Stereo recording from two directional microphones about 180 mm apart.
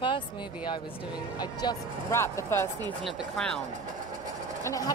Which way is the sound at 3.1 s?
Centre (ahead or behind).